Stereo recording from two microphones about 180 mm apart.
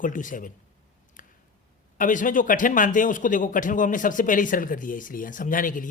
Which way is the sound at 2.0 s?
45° left (ahead or behind).